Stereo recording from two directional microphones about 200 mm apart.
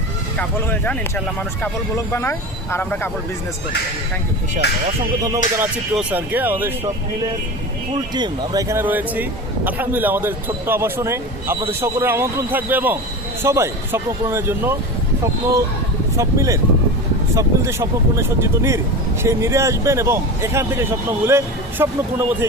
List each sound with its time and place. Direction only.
0.3 s speech: 10° left (ahead or behind)
5.5 s a man's voice: 5° right (ahead or behind)
8.1 s a man's voice: 20° right (ahead or behind)